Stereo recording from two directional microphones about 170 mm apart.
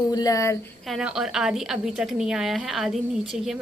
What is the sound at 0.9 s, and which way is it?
A woman's voice, 5° right (ahead or behind).